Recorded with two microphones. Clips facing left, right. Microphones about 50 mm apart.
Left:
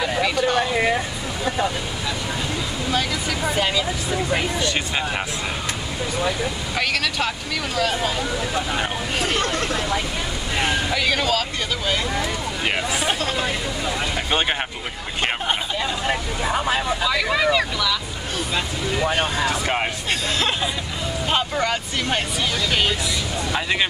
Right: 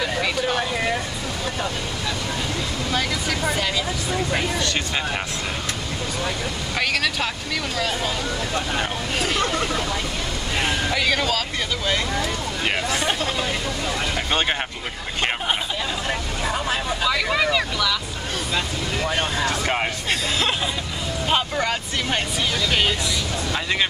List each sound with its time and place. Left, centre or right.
0.2 s vehicle: centre
2.9 s speech: centre
7.7 s speech: centre
9.4 s speech: centre
12.6 s speech: centre
16.1 s speech: centre
17.0 s speech: centre
21.3 s speech: centre
23.5 s speech: centre